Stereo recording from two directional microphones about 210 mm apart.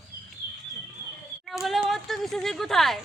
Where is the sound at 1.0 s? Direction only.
45° right (ahead or behind).